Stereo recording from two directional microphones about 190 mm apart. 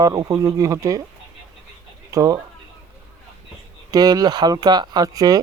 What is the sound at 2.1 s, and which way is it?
Speech, 15° right (ahead or behind).